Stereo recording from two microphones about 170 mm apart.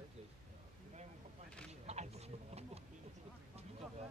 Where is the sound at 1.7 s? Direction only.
40° right (ahead or behind).